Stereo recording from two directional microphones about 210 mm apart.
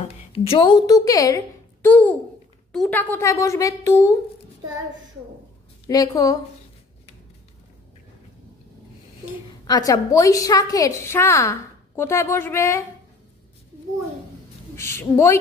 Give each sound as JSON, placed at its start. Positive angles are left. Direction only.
{"t": 0.3, "sound": "a woman's voice", "side_deg": 25}
{"t": 5.9, "sound": "a woman's voice", "side_deg": 15}
{"t": 9.7, "sound": "a woman's voice", "side_deg": 15}
{"t": 14.8, "sound": "a woman's voice", "side_deg": 10}